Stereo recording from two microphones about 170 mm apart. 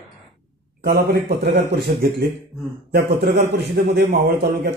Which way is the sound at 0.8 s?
65° right (ahead or behind).